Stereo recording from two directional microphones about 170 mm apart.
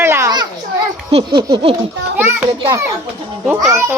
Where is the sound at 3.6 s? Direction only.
15° right (ahead or behind).